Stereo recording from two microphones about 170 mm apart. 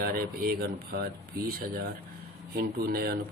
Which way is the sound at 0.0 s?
60° right (ahead or behind).